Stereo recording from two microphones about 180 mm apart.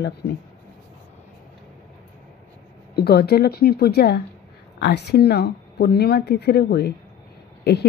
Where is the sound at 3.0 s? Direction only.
60° left (ahead or behind).